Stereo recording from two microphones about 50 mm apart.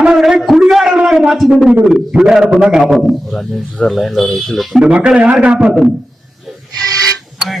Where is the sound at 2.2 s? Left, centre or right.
Centre.